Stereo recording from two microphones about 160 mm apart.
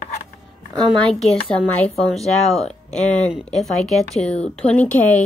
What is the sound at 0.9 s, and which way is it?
Speech, 5° left (ahead or behind).